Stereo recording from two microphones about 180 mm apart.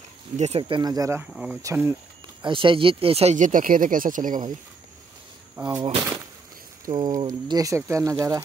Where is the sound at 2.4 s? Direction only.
30° right (ahead or behind); by 4.5 s 45° right (ahead or behind).